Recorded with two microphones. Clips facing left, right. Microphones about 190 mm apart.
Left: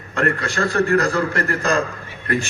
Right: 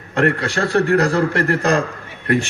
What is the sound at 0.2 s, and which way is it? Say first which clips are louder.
A man's voice: right 3 dB; 65° right (ahead or behind).